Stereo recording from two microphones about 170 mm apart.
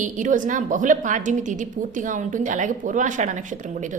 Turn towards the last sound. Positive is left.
turn(degrees=-45)  # may be behind; listen again after turning